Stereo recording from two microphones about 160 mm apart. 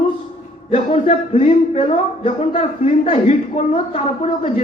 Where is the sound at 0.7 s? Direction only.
40° left (ahead or behind).